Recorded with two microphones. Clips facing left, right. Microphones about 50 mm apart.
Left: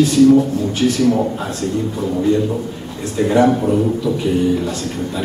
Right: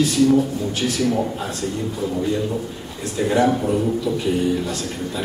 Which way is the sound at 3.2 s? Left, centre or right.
Centre.